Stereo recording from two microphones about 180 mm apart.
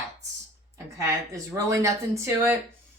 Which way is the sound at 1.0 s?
15° right (ahead or behind).